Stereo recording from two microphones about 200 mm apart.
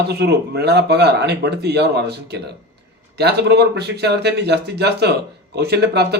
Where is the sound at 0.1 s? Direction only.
55° right (ahead or behind).